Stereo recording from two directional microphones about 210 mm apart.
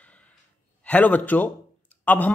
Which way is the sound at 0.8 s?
5° left (ahead or behind).